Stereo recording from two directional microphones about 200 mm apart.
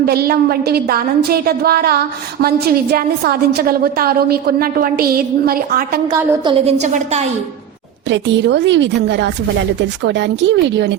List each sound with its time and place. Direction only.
0.0 s a woman's voice: 50° right (ahead or behind)
6.1 s a woman's voice: 20° right (ahead or behind)
8.1 s a woman's voice: 60° right (ahead or behind)